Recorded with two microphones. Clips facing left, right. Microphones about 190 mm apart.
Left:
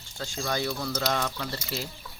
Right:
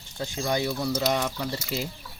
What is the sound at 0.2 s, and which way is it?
Speech, 15° right (ahead or behind).